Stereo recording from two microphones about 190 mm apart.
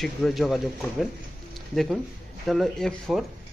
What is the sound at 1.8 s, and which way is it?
Speech, centre (ahead or behind).